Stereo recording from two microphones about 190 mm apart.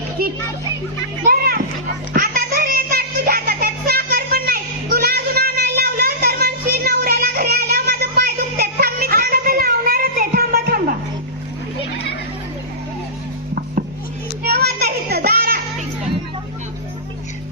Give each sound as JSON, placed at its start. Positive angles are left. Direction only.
{"t": 0.2, "sound": "children playing", "side_deg": -50}
{"t": 1.2, "sound": "music", "side_deg": -50}
{"t": 14.4, "sound": "child singing", "side_deg": -55}